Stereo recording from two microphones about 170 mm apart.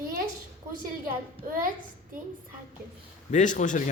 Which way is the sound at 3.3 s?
45° left (ahead or behind).